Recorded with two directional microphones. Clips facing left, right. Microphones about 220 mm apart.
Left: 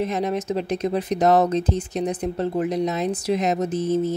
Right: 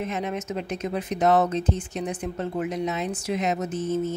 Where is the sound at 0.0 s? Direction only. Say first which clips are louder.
Left 5 dB; 35° left (ahead or behind).